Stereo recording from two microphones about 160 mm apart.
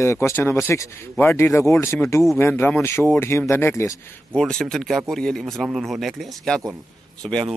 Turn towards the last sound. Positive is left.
turn(degrees=5)  # may be behind; listen again after turning